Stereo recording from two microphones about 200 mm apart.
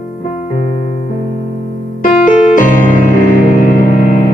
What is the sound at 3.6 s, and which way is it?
Music, 45° left (ahead or behind).